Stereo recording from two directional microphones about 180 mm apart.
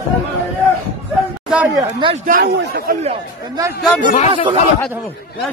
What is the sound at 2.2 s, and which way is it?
Speech, 55° right (ahead or behind).